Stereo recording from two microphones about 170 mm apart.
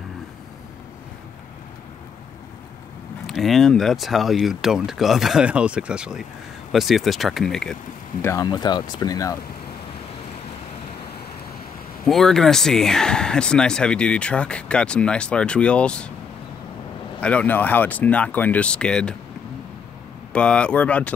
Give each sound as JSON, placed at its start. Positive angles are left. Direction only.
{"t": 3.3, "sound": "speech", "side_deg": 0}
{"t": 8.2, "sound": "speech", "side_deg": 20}
{"t": 12.1, "sound": "speech", "side_deg": 0}
{"t": 17.2, "sound": "speech", "side_deg": 5}
{"t": 20.3, "sound": "speech", "side_deg": 5}